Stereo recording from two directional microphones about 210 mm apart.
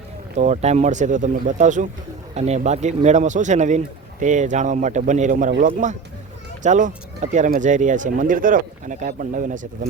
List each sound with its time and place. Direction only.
0.3 s speech: 35° right (ahead or behind)